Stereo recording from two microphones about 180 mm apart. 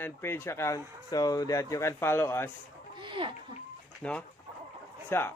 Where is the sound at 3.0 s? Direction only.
25° right (ahead or behind).